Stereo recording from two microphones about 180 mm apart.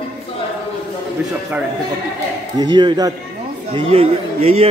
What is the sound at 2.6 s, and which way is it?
Speech, 25° right (ahead or behind).